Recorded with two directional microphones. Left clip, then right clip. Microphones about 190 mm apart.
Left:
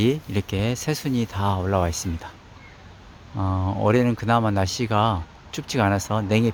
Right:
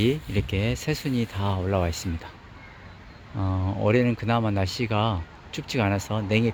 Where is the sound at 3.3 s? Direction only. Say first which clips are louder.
Left 4 dB; 15° left (ahead or behind).